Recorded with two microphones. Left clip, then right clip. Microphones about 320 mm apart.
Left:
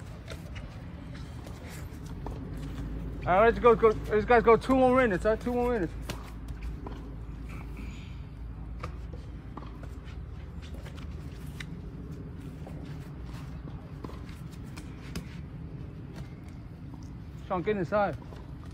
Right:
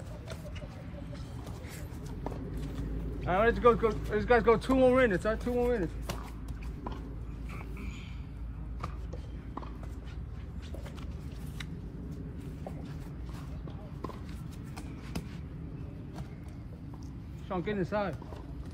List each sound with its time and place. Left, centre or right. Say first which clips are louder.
2.0 s vehicle: right 2 dB; centre
3.3 s speech: left 4 dB; left
17.5 s speech: left 4 dB; centre